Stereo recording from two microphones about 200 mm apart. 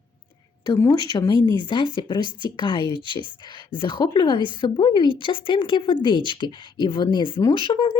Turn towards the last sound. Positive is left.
turn(degrees=25)  # may be behind; listen again after turning